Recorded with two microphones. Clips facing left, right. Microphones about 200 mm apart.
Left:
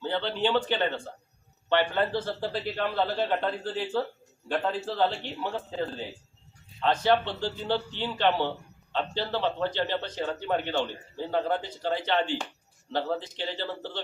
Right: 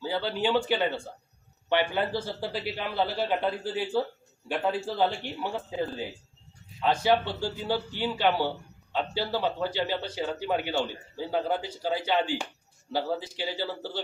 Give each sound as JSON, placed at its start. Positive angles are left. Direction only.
{"t": 0.0, "sound": "speech", "side_deg": -5}